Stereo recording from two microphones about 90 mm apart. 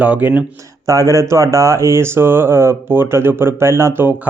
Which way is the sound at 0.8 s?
40° right (ahead or behind).